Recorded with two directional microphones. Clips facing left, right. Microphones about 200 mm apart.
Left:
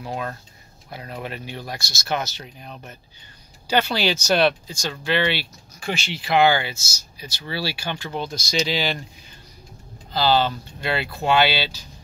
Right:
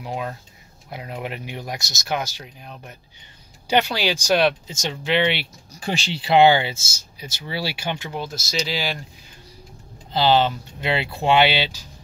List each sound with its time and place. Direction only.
0.0 s speech: 15° right (ahead or behind)
5.8 s speech: 35° right (ahead or behind)
8.1 s speech: 5° right (ahead or behind)
10.1 s speech: 20° right (ahead or behind)